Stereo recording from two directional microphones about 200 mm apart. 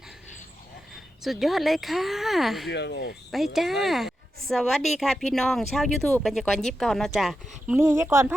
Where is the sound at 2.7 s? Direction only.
55° left (ahead or behind).